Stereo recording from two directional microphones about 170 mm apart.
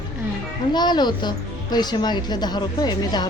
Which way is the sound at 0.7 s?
25° left (ahead or behind).